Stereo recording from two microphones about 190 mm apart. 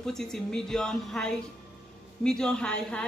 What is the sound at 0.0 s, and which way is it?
Speech, centre (ahead or behind).